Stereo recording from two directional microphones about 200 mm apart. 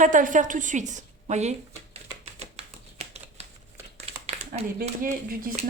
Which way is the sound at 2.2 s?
30° right (ahead or behind).